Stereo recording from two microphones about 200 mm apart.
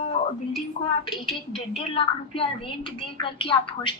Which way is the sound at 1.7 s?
25° left (ahead or behind).